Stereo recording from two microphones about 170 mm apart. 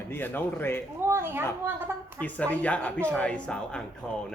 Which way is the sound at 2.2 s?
10° left (ahead or behind).